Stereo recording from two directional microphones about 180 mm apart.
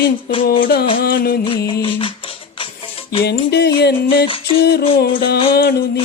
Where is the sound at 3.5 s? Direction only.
65° left (ahead or behind).